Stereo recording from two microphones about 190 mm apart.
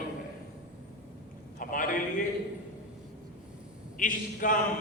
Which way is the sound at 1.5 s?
45° left (ahead or behind).